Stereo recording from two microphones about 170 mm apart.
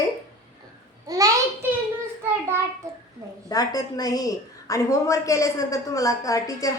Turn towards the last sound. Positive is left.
turn(degrees=20)  # may be behind; listen again after turning